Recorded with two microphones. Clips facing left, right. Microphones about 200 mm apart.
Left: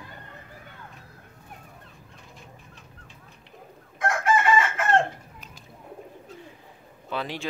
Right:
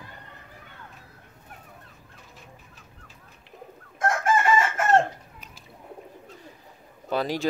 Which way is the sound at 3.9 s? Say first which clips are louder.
Even; 45° right (ahead or behind).